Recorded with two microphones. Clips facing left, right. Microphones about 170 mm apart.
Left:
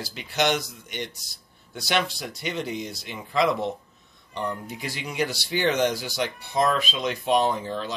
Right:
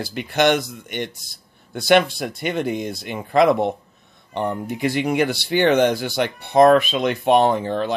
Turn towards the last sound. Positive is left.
turn(degrees=-60)  # may be behind; listen again after turning